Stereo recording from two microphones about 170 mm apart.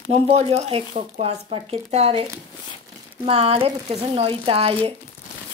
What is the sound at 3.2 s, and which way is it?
Speech, 35° right (ahead or behind).